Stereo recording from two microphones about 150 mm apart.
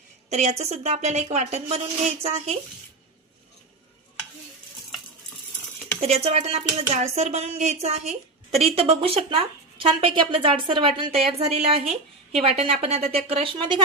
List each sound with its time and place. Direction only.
0.3 s a woman's voice: 50° right (ahead or behind)
6.0 s a woman's voice: 45° right (ahead or behind)